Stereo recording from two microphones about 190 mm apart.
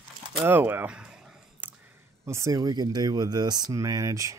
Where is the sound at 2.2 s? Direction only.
15° right (ahead or behind).